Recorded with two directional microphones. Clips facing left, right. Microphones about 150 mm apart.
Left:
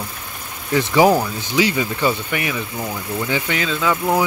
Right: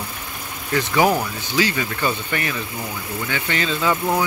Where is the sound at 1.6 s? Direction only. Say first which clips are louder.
Left 3 dB; 15° left (ahead or behind); by 4.0 s centre (ahead or behind).